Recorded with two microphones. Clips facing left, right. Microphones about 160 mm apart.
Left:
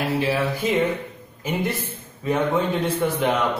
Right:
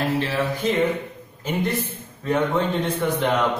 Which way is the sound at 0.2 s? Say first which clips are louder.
Left 1 dB; 10° left (ahead or behind).